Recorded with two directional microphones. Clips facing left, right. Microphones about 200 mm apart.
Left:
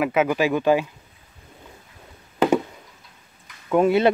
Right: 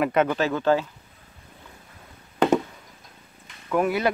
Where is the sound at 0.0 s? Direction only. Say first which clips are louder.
Left 2 dB; 5° left (ahead or behind).